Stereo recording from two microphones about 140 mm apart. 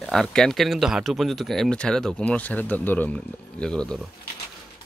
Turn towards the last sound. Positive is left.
turn(degrees=5)  # may be behind; listen again after turning